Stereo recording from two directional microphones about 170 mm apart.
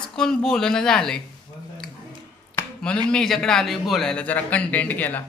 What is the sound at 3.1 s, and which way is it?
A man's voice, 5° left (ahead or behind).